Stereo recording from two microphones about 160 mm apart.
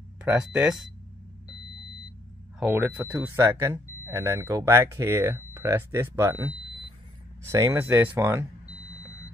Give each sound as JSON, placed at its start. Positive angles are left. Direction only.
{"t": 0.2, "sound": "speech", "side_deg": -10}
{"t": 2.6, "sound": "speech", "side_deg": -15}